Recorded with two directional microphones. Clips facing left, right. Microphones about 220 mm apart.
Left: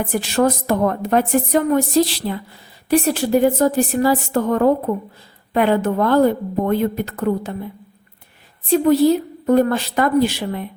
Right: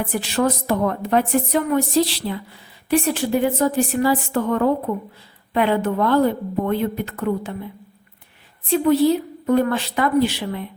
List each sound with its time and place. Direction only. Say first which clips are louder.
0.1 s a woman's voice: left 4 dB; 45° left (ahead or behind)
8.7 s a woman's voice: left 2 dB; 40° left (ahead or behind)